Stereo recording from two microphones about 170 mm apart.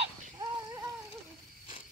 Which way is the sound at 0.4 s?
25° right (ahead or behind).